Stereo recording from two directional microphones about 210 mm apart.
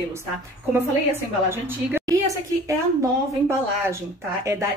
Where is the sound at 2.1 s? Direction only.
15° right (ahead or behind).